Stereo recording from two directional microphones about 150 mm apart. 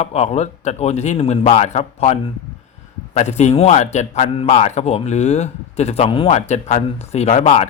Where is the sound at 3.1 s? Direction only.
50° left (ahead or behind).